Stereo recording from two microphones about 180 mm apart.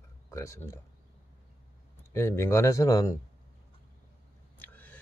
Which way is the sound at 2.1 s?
15° left (ahead or behind).